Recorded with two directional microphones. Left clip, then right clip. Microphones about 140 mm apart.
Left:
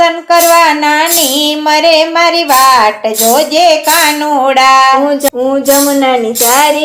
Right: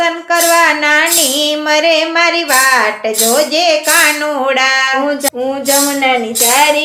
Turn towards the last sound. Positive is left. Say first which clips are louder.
# left 3 dB
turn(degrees=40)  # may be behind; listen again after turning